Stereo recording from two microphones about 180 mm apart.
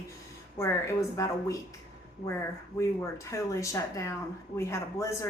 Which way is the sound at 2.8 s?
15° left (ahead or behind).